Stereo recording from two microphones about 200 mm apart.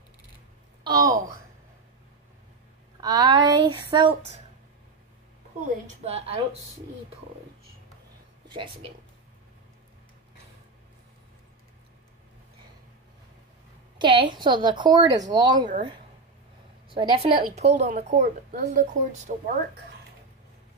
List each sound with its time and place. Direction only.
0.8 s a sound: 20° right (ahead or behind)
3.0 s a woman's voice: 20° right (ahead or behind)
6.0 s a woman's voice: 30° right (ahead or behind)
13.9 s a woman's voice: 25° right (ahead or behind)
16.9 s a woman's voice: 25° right (ahead or behind)
17.7 s a woman's voice: 35° right (ahead or behind)